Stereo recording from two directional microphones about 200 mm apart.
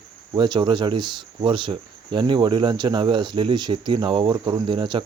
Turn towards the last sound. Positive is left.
turn(degrees=-25)  # may be behind; listen again after turning